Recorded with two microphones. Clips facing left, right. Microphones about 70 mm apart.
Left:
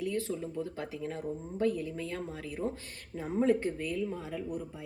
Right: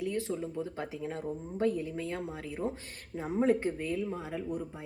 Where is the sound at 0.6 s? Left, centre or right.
Right.